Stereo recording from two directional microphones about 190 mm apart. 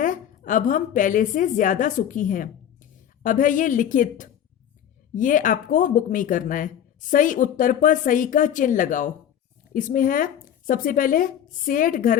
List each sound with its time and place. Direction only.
0.0 s speech: 45° left (ahead or behind)